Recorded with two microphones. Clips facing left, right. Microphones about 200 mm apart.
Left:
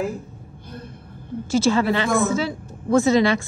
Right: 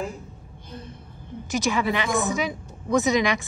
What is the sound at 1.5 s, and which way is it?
A woman's voice, 15° right (ahead or behind).